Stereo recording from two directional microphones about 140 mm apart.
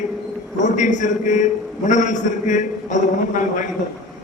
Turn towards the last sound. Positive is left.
turn(degrees=60)  # may be behind; listen again after turning